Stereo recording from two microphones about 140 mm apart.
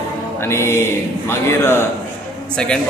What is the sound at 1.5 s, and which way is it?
Speech, 15° left (ahead or behind).